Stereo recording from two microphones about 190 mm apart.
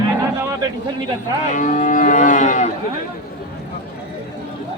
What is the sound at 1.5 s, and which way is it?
Livestock, 40° left (ahead or behind).